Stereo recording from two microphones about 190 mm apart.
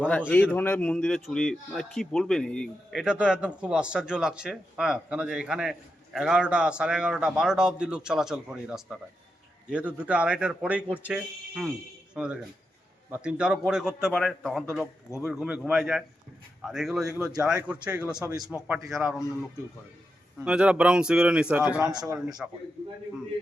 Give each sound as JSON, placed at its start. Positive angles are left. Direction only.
{"t": 0.5, "sound": "a man's voice", "side_deg": 10}
{"t": 20.4, "sound": "speech", "side_deg": -5}
{"t": 21.8, "sound": "a man's voice", "side_deg": -20}